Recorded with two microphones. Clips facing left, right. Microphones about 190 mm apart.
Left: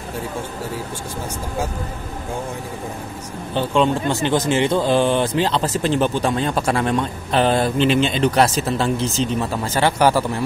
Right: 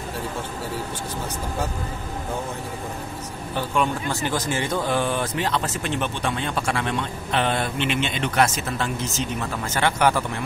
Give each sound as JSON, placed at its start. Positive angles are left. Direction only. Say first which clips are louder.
{"t": 3.5, "sound": "speech", "louder": "left 6 dB", "side_deg": 25}